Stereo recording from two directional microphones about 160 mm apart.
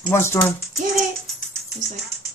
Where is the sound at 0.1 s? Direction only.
15° left (ahead or behind).